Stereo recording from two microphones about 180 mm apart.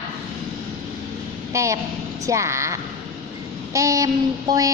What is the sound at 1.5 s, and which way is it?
A woman's voice, 15° right (ahead or behind).